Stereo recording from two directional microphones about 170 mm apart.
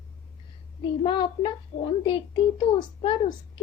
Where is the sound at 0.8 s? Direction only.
25° left (ahead or behind).